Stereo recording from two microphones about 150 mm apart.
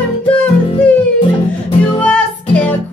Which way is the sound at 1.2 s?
40° left (ahead or behind).